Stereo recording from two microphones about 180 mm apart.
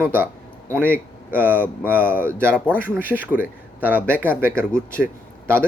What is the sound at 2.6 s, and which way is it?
Speech, 10° left (ahead or behind).